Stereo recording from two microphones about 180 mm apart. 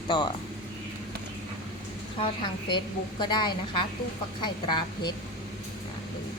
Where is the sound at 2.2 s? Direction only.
25° left (ahead or behind).